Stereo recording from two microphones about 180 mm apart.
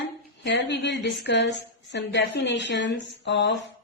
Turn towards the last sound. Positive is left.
turn(degrees=75)  # may be behind; listen again after turning